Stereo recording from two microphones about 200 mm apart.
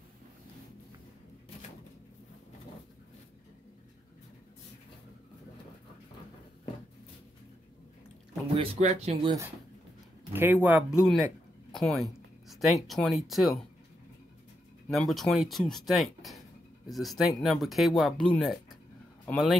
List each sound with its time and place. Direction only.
8.7 s speech: 35° right (ahead or behind)
10.3 s speech: 10° right (ahead or behind)
14.9 s speech: centre (ahead or behind)